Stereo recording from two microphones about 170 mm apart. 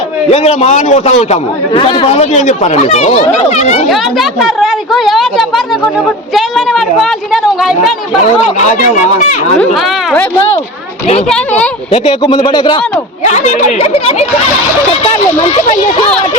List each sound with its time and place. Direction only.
0.3 s speech: 40° left (ahead or behind)
1.7 s speech: 30° left (ahead or behind)
3.8 s a woman's voice: centre (ahead or behind)
9.7 s a woman's voice: centre (ahead or behind)
11.3 s speech: 5° left (ahead or behind)
11.9 s speech: 35° left (ahead or behind)
13.3 s speech: 45° left (ahead or behind)